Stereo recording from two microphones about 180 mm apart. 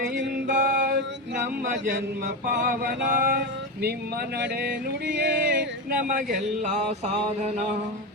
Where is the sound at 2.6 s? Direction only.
55° right (ahead or behind); by 7.7 s 40° right (ahead or behind).